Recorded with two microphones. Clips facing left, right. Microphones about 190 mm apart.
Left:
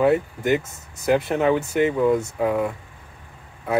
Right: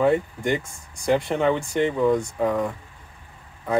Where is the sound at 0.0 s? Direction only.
5° left (ahead or behind).